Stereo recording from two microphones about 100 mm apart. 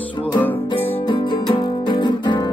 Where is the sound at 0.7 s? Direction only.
55° left (ahead or behind).